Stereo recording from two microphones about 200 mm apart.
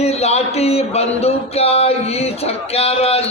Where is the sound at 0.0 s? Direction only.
30° left (ahead or behind).